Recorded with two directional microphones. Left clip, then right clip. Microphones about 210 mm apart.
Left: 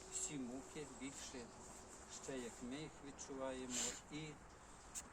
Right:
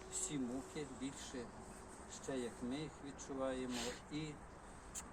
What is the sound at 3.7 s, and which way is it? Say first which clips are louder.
Speech: right 2 dB; 55° left (ahead or behind).